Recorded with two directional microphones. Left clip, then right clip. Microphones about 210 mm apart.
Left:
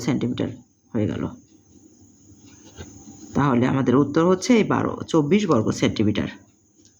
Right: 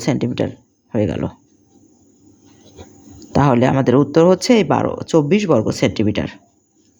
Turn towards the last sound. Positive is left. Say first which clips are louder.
# right 4 dB
turn(degrees=-30)  # may be behind; listen again after turning